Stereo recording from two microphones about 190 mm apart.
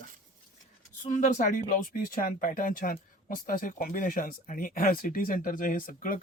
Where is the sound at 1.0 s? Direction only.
40° left (ahead or behind).